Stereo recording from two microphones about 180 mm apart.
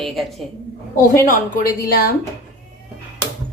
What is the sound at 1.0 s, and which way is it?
A woman's voice, 50° left (ahead or behind).